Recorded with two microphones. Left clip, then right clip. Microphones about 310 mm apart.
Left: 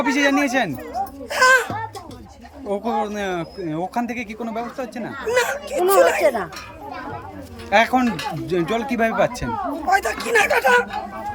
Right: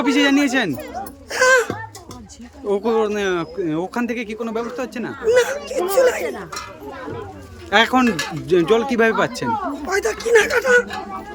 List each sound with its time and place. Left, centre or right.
0.0 s speech: centre
1.3 s music: centre
2.6 s speech: centre
7.7 s speech: centre